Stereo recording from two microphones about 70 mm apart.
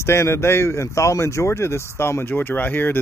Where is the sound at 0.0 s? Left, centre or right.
Left.